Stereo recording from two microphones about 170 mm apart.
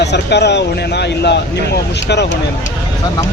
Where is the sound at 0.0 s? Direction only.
80° left.